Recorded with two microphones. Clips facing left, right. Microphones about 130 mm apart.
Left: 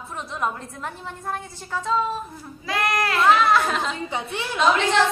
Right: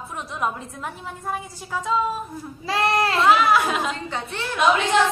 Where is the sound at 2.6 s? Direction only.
30° right (ahead or behind).